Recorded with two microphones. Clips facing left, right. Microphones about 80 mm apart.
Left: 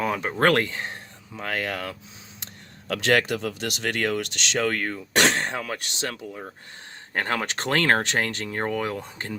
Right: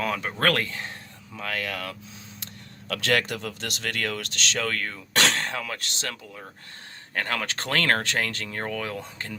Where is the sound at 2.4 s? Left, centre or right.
Left.